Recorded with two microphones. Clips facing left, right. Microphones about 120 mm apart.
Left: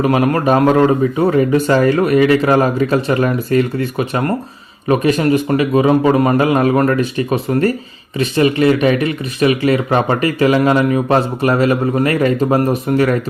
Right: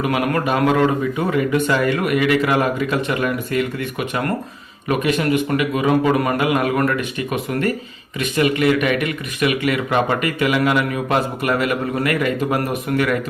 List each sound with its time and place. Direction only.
0.0 s speech: 35° left (ahead or behind)